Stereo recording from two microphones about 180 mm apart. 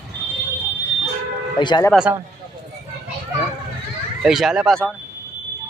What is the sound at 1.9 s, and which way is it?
Speech, 5° right (ahead or behind).